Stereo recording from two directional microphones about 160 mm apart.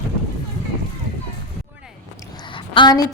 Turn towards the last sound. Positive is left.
turn(degrees=25)  # may be behind; listen again after turning